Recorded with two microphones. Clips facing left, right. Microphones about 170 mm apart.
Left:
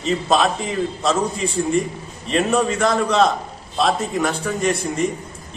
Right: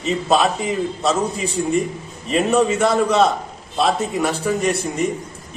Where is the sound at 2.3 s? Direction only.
5° right (ahead or behind).